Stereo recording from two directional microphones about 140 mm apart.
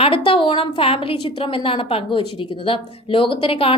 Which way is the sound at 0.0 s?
40° left (ahead or behind).